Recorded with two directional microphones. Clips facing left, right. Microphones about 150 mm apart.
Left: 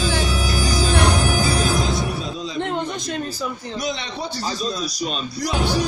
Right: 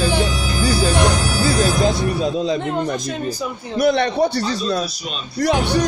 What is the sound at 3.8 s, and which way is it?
A man's voice, 60° right (ahead or behind).